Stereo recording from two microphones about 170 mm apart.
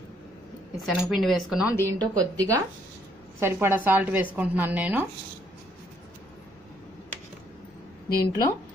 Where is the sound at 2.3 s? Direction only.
20° right (ahead or behind).